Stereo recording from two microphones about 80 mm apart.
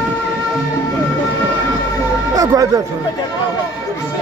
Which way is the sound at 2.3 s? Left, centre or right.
Right.